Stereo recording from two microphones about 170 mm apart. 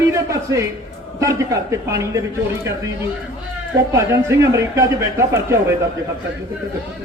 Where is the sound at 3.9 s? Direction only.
15° right (ahead or behind).